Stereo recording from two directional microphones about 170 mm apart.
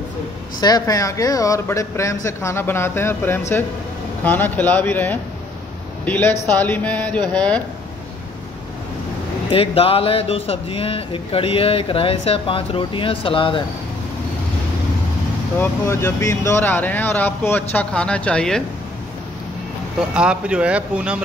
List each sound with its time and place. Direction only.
0.6 s speech: 25° left (ahead or behind)
9.5 s speech: 35° left (ahead or behind)
15.6 s speech: 15° left (ahead or behind)
20.0 s speech: 5° right (ahead or behind)